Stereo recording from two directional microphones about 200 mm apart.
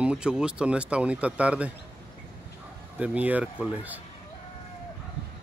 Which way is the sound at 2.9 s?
5° right (ahead or behind).